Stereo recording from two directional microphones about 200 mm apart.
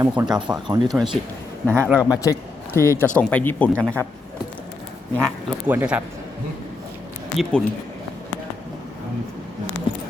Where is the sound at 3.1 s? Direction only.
10° left (ahead or behind).